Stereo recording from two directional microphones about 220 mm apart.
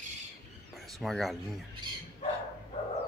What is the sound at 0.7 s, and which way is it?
Speech, centre (ahead or behind).